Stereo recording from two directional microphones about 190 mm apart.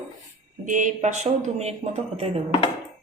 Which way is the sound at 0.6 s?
45° right (ahead or behind).